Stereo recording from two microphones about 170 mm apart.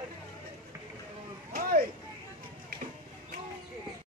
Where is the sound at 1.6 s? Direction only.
55° right (ahead or behind).